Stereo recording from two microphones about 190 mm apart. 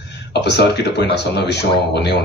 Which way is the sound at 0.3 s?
60° left (ahead or behind).